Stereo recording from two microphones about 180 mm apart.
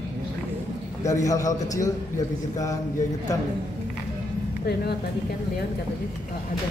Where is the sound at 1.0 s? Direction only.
20° left (ahead or behind).